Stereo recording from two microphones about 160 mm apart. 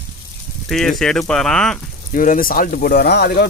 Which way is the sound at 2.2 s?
60° left (ahead or behind).